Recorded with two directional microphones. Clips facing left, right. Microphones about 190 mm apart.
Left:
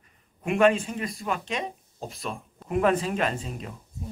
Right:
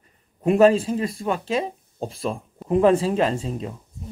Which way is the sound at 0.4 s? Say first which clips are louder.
Right 6 dB; 30° right (ahead or behind).